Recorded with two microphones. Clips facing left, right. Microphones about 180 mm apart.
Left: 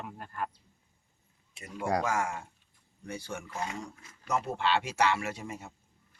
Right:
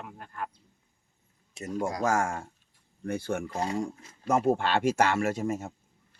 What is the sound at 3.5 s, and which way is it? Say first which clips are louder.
Speech: right 6 dB; 35° right (ahead or behind).